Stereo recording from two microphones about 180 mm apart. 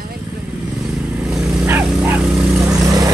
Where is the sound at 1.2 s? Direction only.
5° right (ahead or behind).